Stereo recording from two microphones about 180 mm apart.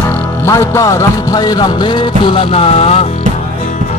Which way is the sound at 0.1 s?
15° left (ahead or behind).